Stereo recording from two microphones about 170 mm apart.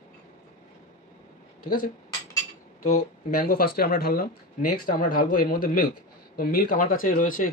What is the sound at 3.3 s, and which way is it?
A man's voice, 60° left (ahead or behind).